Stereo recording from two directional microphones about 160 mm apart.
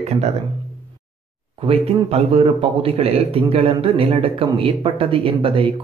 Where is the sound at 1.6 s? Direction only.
40° right (ahead or behind).